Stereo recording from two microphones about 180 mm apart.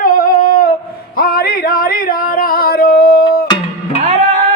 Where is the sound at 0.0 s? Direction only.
50° left (ahead or behind).